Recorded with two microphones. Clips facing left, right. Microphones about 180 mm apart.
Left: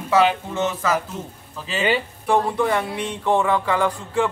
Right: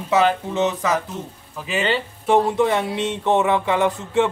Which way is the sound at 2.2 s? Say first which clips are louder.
Right 3 dB; 20° right (ahead or behind).